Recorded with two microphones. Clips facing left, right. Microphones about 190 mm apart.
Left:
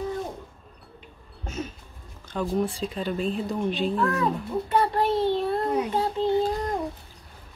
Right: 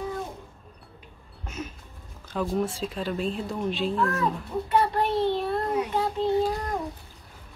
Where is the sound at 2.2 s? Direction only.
5° right (ahead or behind).